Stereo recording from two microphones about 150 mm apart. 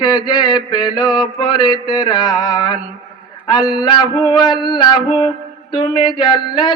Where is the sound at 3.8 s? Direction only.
30° left (ahead or behind).